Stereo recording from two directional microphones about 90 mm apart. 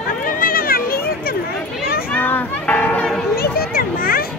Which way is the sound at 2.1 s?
20° left (ahead or behind).